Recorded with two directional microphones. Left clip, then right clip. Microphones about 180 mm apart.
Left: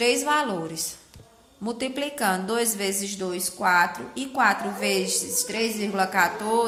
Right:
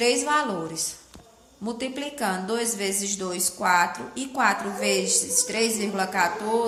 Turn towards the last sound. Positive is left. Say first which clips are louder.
# left 1 dB
turn(degrees=25)  # may be behind; listen again after turning